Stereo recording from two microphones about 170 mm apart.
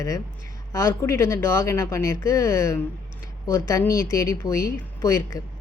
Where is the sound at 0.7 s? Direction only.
15° left (ahead or behind).